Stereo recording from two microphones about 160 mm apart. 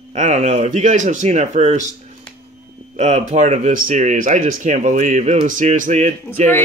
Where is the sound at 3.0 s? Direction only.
45° right (ahead or behind).